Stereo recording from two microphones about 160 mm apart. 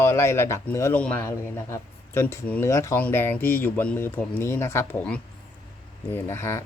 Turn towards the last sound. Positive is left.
turn(degrees=15)  # may be behind; listen again after turning